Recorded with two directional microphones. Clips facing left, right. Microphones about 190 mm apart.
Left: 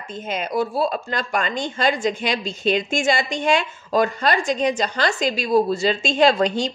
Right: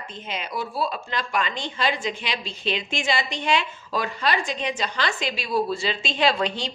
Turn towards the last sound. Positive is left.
turn(degrees=45)  # may be behind; listen again after turning